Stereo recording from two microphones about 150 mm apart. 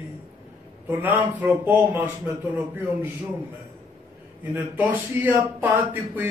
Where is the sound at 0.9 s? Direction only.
10° right (ahead or behind).